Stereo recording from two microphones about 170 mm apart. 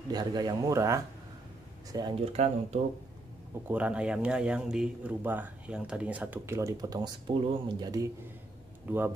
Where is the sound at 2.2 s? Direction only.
40° right (ahead or behind).